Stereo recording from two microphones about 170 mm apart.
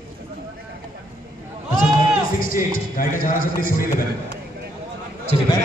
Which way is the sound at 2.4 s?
55° left (ahead or behind).